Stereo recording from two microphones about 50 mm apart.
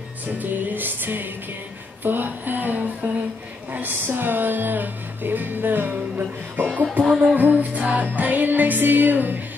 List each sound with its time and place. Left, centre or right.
0.4 s music: right